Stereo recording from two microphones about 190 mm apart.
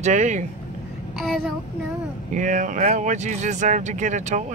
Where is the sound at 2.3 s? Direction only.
40° right (ahead or behind).